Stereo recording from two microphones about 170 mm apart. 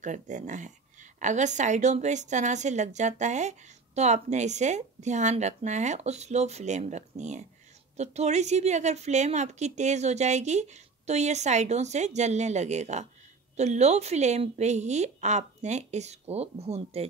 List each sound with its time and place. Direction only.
0.0 s a woman's voice: 45° right (ahead or behind)